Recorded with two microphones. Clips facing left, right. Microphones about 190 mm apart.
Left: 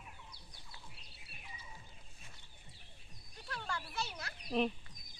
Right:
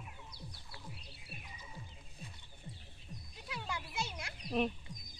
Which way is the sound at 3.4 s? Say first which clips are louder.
Even; 10° right (ahead or behind).